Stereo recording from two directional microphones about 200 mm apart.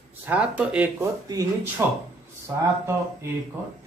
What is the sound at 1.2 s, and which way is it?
Speech, 15° right (ahead or behind).